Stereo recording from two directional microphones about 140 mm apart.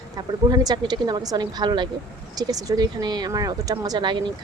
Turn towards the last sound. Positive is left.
turn(degrees=-35)  # may be behind; listen again after turning